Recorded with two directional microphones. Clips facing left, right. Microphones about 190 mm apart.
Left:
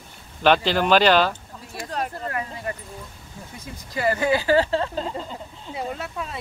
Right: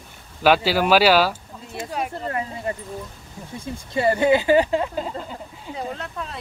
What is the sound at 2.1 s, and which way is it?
Speech, 25° right (ahead or behind).